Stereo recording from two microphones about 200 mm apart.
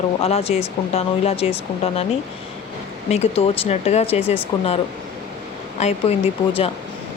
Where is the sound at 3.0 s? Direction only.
30° left (ahead or behind).